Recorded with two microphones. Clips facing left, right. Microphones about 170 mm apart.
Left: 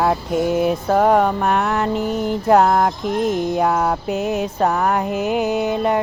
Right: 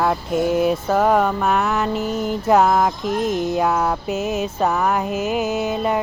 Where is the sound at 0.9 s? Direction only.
10° left (ahead or behind).